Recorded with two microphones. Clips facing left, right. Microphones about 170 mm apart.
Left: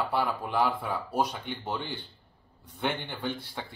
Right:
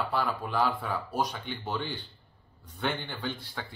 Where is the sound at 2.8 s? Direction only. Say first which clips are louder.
Left 1 dB; 20° left (ahead or behind).